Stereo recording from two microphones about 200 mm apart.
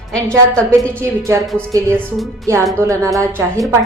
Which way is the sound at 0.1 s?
5° left (ahead or behind).